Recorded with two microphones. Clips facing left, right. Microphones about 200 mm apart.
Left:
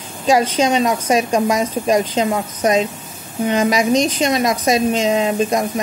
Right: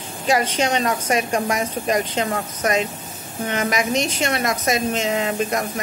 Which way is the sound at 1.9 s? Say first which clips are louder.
Left 5 dB; 25° left (ahead or behind).